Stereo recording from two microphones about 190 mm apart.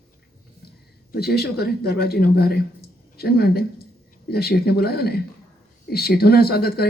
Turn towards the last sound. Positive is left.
turn(degrees=55)  # may be behind; listen again after turning